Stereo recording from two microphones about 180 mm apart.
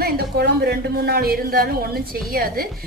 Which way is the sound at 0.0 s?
60° right (ahead or behind).